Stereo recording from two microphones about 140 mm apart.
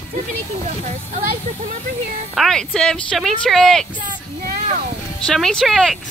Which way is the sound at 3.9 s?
80° right.